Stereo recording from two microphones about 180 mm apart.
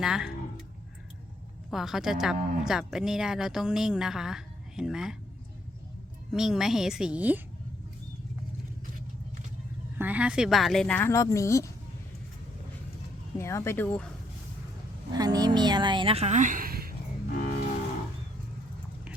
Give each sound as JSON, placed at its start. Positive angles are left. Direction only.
{"t": 0.0, "sound": "speech", "side_deg": -5}
{"t": 1.7, "sound": "speech", "side_deg": 0}
{"t": 6.3, "sound": "speech", "side_deg": 0}
{"t": 10.0, "sound": "speech", "side_deg": -5}
{"t": 13.4, "sound": "speech", "side_deg": 15}
{"t": 15.1, "sound": "speech", "side_deg": -20}